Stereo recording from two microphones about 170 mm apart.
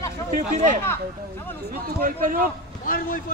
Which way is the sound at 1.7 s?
60° right (ahead or behind).